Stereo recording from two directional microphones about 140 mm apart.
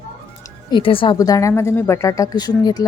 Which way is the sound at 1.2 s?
25° left (ahead or behind).